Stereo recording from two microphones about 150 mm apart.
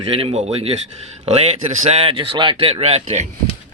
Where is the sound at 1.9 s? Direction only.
40° right (ahead or behind).